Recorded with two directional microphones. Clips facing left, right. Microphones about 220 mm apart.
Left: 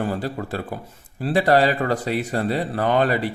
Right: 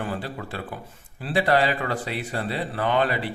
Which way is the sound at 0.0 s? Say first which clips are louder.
Left 5 dB; 40° left (ahead or behind).